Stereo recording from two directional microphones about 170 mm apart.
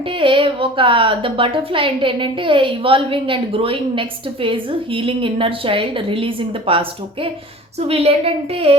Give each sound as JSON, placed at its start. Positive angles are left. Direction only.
{"t": 0.1, "sound": "a woman's voice", "side_deg": -30}